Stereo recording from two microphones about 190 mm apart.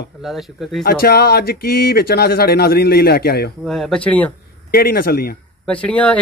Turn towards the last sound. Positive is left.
turn(degrees=5)  # may be behind; listen again after turning